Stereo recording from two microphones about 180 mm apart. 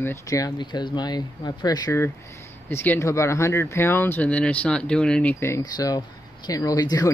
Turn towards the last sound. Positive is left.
turn(degrees=20)  # may be behind; listen again after turning